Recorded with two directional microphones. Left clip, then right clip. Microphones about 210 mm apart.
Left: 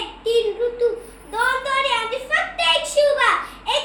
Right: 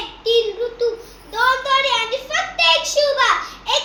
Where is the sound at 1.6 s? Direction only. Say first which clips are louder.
Right 3 dB; 15° left (ahead or behind).